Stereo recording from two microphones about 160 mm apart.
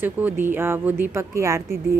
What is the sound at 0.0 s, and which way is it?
A woman's voice, 10° right (ahead or behind).